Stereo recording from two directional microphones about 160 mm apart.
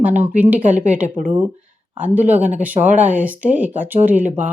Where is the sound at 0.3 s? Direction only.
10° right (ahead or behind).